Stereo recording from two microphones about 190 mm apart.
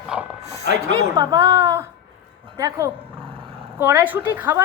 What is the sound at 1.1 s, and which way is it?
Speech, 20° right (ahead or behind).